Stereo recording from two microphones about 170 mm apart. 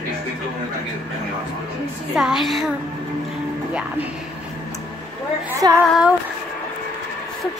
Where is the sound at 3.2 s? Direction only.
5° right (ahead or behind).